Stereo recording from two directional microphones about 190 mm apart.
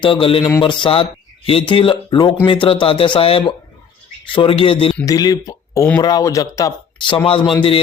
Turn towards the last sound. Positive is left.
turn(degrees=25)  # may be behind; listen again after turning